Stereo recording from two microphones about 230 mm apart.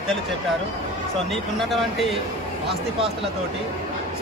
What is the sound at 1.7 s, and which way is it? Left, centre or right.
Speech, centre.